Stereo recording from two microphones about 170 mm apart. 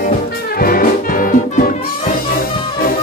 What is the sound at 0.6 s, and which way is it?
Music, 60° left (ahead or behind).